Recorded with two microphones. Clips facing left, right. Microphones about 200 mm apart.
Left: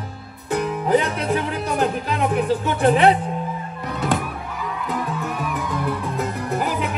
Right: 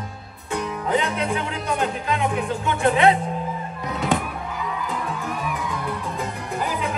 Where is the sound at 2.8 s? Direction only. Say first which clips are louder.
Left 2 dB; 35° left (ahead or behind).